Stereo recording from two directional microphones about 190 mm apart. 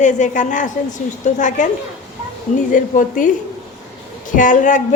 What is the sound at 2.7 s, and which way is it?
Speech, 45° left (ahead or behind).